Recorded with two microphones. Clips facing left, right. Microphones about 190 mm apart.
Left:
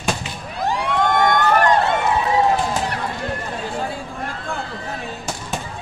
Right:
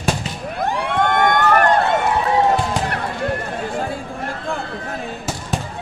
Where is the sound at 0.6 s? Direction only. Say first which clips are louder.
Even; 55° right (ahead or behind).